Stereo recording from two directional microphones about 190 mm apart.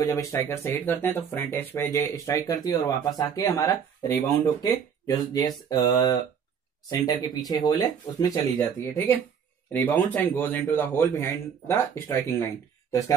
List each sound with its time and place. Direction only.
0.0 s speech: 15° left (ahead or behind)